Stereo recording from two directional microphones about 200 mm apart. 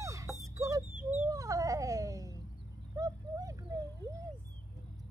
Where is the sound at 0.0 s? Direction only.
15° right (ahead or behind).